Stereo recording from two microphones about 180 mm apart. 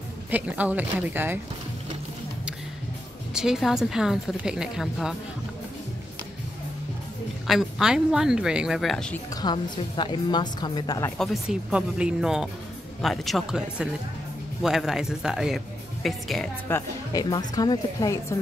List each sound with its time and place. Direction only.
0.3 s speech: 10° right (ahead or behind)
3.3 s speech: centre (ahead or behind)
7.4 s speech: centre (ahead or behind)
9.3 s a woman's voice: 25° left (ahead or behind)
11.1 s speech: 5° right (ahead or behind)
16.6 s a woman's voice: 15° left (ahead or behind)